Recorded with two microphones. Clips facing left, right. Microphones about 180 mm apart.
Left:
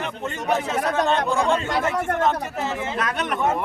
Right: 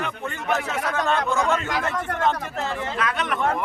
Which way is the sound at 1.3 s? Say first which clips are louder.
Left 2 dB; 30° left (ahead or behind).